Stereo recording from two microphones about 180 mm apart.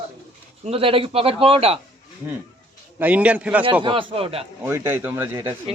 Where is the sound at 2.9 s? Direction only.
10° right (ahead or behind).